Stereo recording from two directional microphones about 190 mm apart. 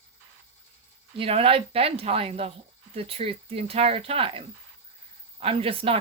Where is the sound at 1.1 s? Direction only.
30° right (ahead or behind).